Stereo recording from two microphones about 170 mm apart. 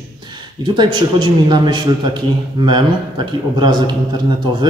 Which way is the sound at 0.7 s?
25° right (ahead or behind).